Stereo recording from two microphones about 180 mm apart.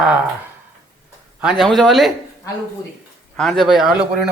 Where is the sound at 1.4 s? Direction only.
Centre (ahead or behind).